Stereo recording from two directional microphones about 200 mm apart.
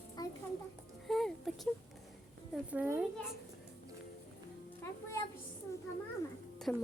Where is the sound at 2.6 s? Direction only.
10° right (ahead or behind).